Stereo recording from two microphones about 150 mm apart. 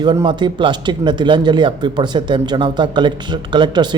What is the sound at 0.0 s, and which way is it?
A man's voice, 30° right (ahead or behind).